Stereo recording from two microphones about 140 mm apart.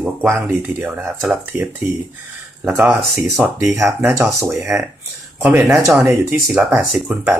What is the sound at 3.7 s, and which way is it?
Speech, 20° right (ahead or behind).